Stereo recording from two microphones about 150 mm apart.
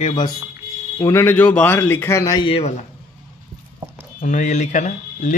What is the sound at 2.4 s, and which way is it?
Speech, 40° left (ahead or behind).